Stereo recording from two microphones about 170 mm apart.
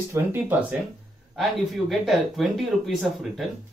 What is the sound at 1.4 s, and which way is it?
Speech, centre (ahead or behind).